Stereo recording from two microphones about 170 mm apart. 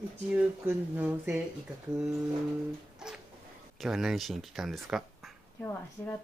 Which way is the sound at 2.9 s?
5° right (ahead or behind).